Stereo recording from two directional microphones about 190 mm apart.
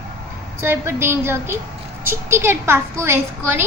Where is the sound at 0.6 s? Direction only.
15° right (ahead or behind).